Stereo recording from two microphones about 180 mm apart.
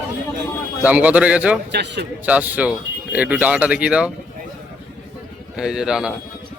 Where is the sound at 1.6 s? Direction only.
70° right (ahead or behind).